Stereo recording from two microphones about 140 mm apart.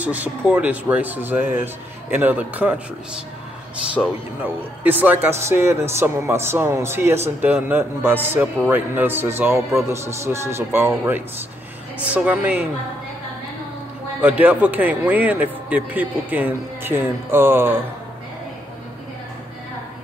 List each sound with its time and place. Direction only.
0.0 s a man's voice: 10° right (ahead or behind)
4.0 s speech: 5° left (ahead or behind)
4.8 s a man's voice: 15° right (ahead or behind)
14.4 s a man's voice: 10° right (ahead or behind)